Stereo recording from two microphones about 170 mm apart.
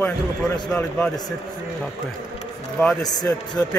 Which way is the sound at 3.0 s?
20° left (ahead or behind).